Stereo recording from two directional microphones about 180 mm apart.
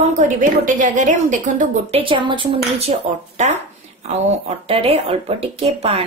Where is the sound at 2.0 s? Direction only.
25° right (ahead or behind).